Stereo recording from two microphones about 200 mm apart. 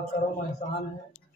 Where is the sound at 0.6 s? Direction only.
30° left (ahead or behind).